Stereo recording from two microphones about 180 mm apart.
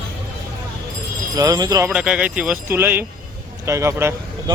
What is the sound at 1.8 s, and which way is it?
Speech, 5° right (ahead or behind).